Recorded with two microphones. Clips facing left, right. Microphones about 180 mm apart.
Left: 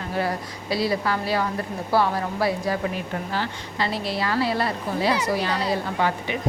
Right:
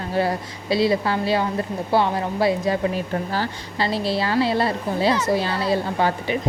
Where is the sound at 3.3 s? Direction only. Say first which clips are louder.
Right 2 dB; 35° right (ahead or behind).